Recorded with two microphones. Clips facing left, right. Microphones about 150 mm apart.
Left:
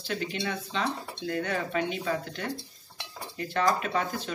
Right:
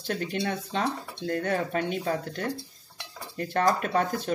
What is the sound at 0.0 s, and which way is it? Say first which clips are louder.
Speech: right 3 dB; 45° right (ahead or behind).